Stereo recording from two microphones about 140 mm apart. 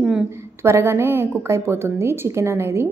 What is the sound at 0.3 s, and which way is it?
A woman's voice, 20° right (ahead or behind).